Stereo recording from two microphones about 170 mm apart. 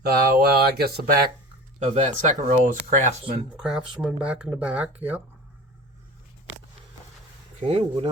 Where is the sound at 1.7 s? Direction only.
40° right (ahead or behind).